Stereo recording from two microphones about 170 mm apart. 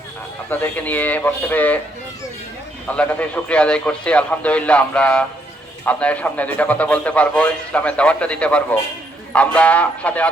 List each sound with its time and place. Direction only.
0.5 s a man's voice: 10° left (ahead or behind)
2.8 s a man's voice: 10° left (ahead or behind)